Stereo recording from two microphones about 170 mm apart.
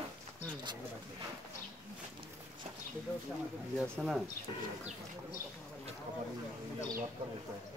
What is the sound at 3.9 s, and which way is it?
Speech, centre (ahead or behind).